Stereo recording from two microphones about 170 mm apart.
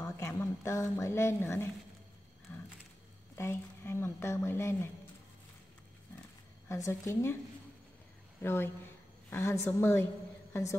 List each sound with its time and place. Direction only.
0.0 s a woman's voice: 15° left (ahead or behind)
2.5 s a sound: 15° left (ahead or behind)
3.3 s speech: 15° left (ahead or behind)
6.7 s speech: 15° left (ahead or behind)
8.4 s a woman's voice: 15° left (ahead or behind)